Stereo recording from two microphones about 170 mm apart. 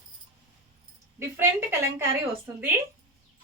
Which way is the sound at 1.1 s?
15° right (ahead or behind).